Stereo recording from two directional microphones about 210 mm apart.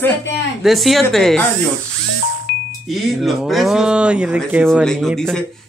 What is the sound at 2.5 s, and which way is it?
Music, 55° left (ahead or behind).